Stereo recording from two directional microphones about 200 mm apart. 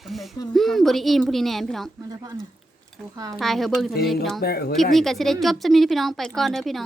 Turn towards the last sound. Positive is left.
turn(degrees=0)  # may be behind; listen again after turning